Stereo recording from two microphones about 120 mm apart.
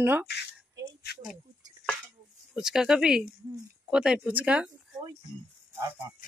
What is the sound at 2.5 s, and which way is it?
Speech, 5° right (ahead or behind).